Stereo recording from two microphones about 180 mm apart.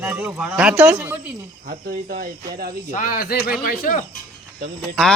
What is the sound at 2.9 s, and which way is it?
Speech, 50° left (ahead or behind).